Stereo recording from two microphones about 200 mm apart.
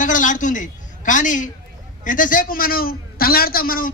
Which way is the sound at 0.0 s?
40° left (ahead or behind).